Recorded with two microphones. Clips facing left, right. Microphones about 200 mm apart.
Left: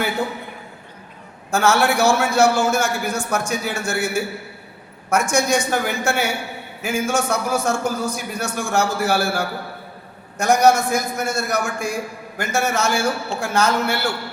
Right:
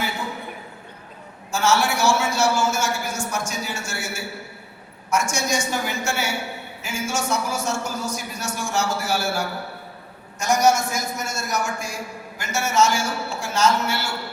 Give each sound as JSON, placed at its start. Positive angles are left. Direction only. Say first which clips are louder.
{"t": 1.5, "sound": "a man's voice", "louder": "left 4 dB", "side_deg": 55}
{"t": 5.3, "sound": "a man's voice", "louder": "left 6 dB", "side_deg": 55}